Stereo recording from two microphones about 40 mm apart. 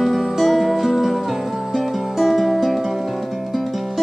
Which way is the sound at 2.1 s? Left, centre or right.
Centre.